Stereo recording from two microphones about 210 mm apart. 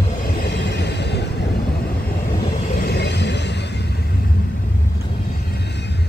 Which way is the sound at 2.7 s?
50° left (ahead or behind).